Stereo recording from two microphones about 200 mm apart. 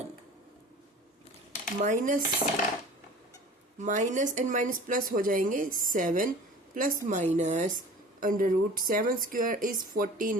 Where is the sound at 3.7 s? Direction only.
35° right (ahead or behind).